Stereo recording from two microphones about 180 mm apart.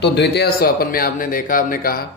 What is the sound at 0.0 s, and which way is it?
Speech, 70° left (ahead or behind).